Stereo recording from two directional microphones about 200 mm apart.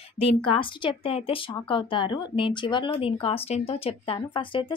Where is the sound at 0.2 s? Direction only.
25° left (ahead or behind).